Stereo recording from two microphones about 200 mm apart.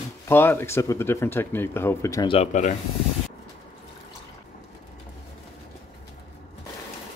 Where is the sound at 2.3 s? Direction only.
35° left (ahead or behind).